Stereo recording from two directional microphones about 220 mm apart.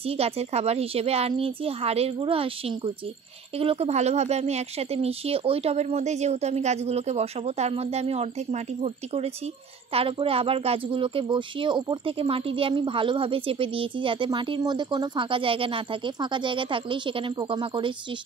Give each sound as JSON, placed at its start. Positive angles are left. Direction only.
{"t": 0.0, "sound": "speech", "side_deg": -25}